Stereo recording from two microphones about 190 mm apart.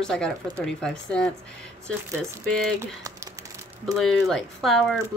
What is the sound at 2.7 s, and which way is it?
Speech, 15° right (ahead or behind).